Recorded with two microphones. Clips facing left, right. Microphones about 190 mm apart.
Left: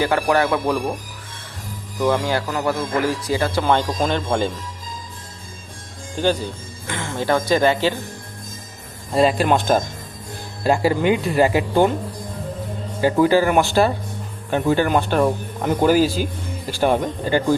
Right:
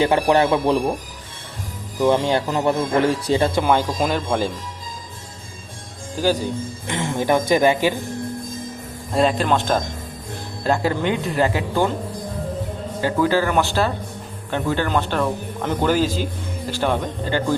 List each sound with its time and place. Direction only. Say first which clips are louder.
0.0 s a man's voice: right 2 dB; 20° right (ahead or behind)
2.0 s a man's voice: right 2 dB; 20° right (ahead or behind)
3.6 s speech: even; 10° right (ahead or behind)
6.1 s speech: even; 5° right (ahead or behind)
6.8 s speech: right 1 dB; 20° right (ahead or behind)
9.1 s speech: left 2 dB; 10° left (ahead or behind)
13.0 s speech: left 3 dB; 15° left (ahead or behind)